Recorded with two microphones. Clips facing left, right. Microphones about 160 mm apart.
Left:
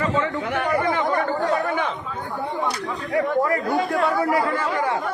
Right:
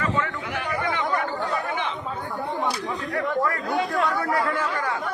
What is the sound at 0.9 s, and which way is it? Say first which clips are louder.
Chatter: left 4 dB; 45° left (ahead or behind).